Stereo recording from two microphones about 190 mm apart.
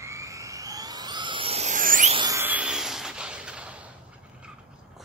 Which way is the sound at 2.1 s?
20° right (ahead or behind).